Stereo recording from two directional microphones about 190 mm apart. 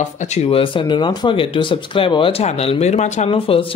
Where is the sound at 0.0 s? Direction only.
30° left (ahead or behind).